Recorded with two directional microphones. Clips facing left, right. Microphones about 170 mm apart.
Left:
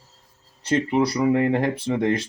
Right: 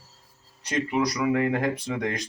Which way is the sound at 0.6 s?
30° left (ahead or behind).